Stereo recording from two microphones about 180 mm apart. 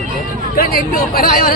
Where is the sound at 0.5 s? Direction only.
55° left (ahead or behind).